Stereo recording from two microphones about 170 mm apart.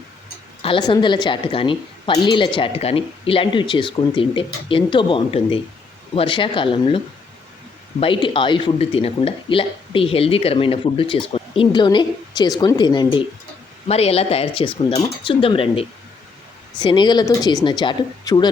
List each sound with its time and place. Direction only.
0.6 s a woman's voice: 30° left (ahead or behind)